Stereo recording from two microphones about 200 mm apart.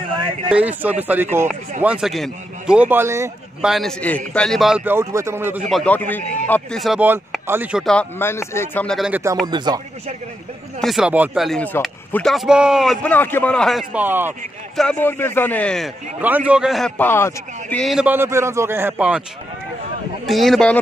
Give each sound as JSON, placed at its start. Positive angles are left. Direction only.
{"t": 0.5, "sound": "a man's voice", "side_deg": -5}
{"t": 3.6, "sound": "a man's voice", "side_deg": 0}
{"t": 5.7, "sound": "speech", "side_deg": 5}
{"t": 9.5, "sound": "speech", "side_deg": -20}
{"t": 10.8, "sound": "speech", "side_deg": 0}
{"t": 14.8, "sound": "speech", "side_deg": 10}
{"t": 16.2, "sound": "a man's voice", "side_deg": -10}
{"t": 20.2, "sound": "speech", "side_deg": 0}